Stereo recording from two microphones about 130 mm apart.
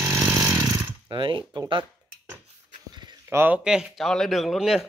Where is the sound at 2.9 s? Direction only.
35° right (ahead or behind).